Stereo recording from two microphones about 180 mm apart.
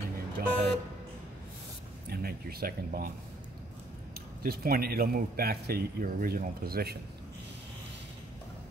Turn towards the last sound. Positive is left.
turn(degrees=-60)  # may be behind; listen again after turning